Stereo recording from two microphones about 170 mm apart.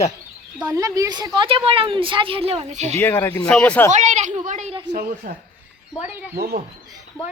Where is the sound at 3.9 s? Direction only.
45° right (ahead or behind).